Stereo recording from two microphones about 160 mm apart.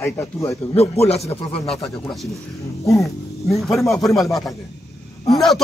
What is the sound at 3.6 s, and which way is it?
Speech, centre (ahead or behind).